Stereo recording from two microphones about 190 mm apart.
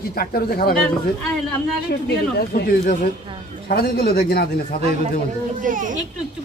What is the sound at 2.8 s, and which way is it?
A man's voice, 40° left (ahead or behind).